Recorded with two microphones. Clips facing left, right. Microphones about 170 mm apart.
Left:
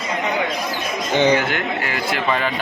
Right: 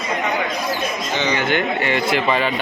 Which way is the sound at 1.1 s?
55° left (ahead or behind).